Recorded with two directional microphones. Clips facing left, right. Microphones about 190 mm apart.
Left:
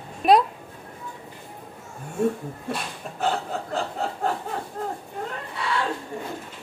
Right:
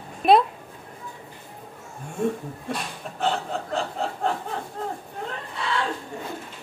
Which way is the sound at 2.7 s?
5° left (ahead or behind).